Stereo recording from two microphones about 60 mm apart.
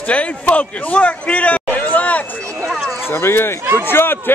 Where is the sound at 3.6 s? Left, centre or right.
Right.